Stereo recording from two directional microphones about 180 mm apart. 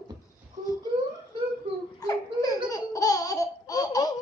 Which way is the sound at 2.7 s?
20° left (ahead or behind).